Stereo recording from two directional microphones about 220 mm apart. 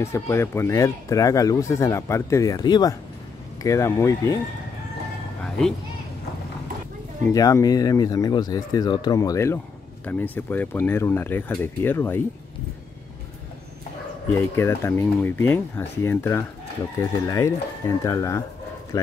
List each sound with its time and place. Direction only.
0.0 s speech: 10° left (ahead or behind)
7.2 s speech: 15° left (ahead or behind)
14.3 s speech: 10° left (ahead or behind)